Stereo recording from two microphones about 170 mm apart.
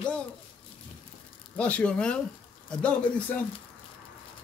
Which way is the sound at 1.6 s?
5° left (ahead or behind).